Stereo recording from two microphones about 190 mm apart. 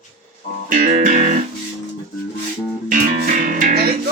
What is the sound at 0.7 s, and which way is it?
Music, 45° right (ahead or behind).